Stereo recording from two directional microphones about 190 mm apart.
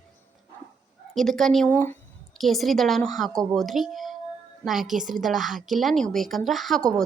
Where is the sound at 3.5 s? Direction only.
Centre (ahead or behind).